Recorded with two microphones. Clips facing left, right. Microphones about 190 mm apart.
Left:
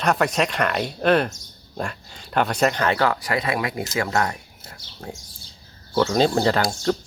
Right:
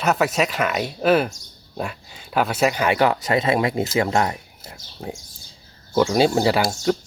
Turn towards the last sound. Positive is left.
turn(degrees=-10)  # may be behind; listen again after turning